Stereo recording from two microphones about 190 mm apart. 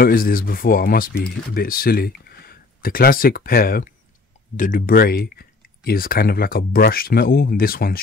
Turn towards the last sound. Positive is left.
turn(degrees=50)  # may be behind; listen again after turning